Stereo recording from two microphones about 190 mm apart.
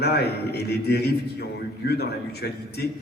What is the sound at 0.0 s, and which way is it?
A man's voice, 60° left (ahead or behind).